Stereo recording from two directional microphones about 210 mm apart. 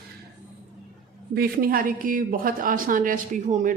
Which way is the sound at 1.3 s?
45° right (ahead or behind).